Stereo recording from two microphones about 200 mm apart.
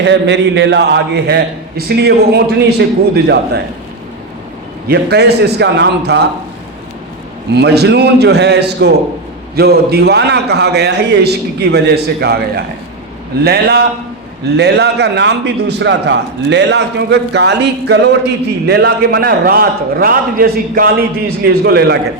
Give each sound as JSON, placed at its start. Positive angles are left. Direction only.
{"t": 0.0, "sound": "a man's voice", "side_deg": -60}
{"t": 4.9, "sound": "a man's voice", "side_deg": -55}
{"t": 7.5, "sound": "a man's voice", "side_deg": -55}